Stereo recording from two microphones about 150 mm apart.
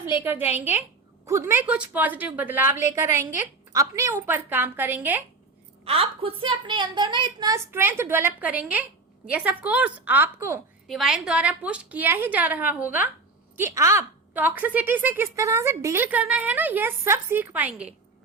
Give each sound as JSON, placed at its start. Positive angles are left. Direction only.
{"t": 0.0, "sound": "a woman's voice", "side_deg": -15}
{"t": 5.8, "sound": "a woman's voice", "side_deg": -40}
{"t": 10.8, "sound": "a woman's voice", "side_deg": 0}